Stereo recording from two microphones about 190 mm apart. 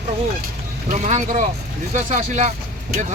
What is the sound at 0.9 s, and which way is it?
Speech, 40° right (ahead or behind).